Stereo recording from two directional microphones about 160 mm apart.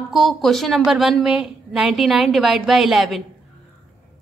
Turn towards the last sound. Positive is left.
turn(degrees=0)  # may be behind; listen again after turning